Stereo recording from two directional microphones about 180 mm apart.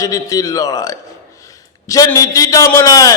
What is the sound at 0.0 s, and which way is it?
Speech, 20° left (ahead or behind).